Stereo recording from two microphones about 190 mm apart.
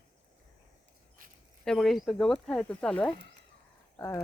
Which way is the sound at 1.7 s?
Centre (ahead or behind).